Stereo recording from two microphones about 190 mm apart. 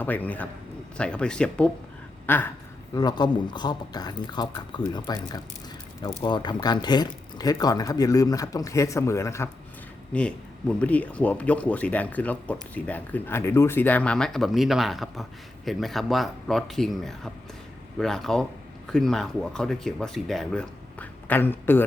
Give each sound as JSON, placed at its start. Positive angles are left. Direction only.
{"t": 0.0, "sound": "speech", "side_deg": 10}
{"t": 2.2, "sound": "a sound", "side_deg": 10}
{"t": 2.9, "sound": "speech", "side_deg": 20}